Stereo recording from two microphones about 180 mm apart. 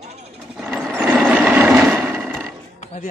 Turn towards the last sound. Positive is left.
turn(degrees=40)  # may be behind; listen again after turning